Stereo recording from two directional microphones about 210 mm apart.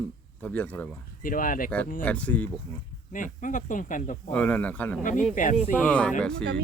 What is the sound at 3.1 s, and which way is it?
Speech, 40° left (ahead or behind).